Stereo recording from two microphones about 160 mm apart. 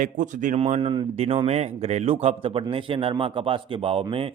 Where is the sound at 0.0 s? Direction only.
55° right (ahead or behind).